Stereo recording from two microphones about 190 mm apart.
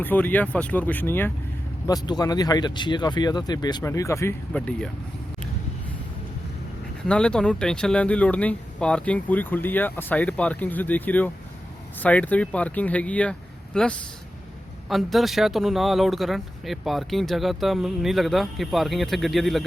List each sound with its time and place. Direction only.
0.0 s speech: 10° left (ahead or behind)
7.1 s speech: 5° left (ahead or behind)